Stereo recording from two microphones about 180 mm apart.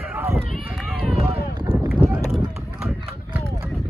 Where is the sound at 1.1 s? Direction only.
25° right (ahead or behind).